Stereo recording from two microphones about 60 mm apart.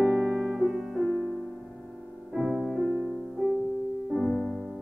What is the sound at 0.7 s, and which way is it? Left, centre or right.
Music, centre.